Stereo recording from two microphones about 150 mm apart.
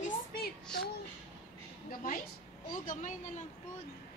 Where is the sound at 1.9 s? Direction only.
70° left (ahead or behind).